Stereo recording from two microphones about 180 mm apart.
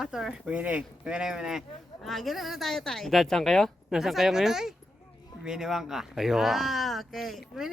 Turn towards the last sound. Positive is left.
turn(degrees=0)  # may be behind; listen again after turning